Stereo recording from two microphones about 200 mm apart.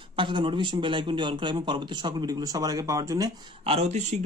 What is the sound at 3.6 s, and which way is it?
Speech, 30° right (ahead or behind).